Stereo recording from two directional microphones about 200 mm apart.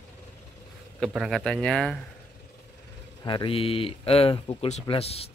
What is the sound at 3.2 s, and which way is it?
Speech, 25° left (ahead or behind).